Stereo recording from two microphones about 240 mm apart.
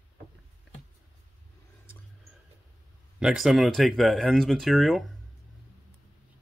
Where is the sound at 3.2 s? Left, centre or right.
Centre.